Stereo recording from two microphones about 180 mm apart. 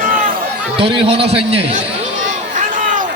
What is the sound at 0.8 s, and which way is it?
Speech, 30° right (ahead or behind).